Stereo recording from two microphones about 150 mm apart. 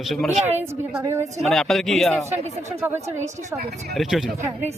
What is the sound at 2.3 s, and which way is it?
Speech, 50° right (ahead or behind).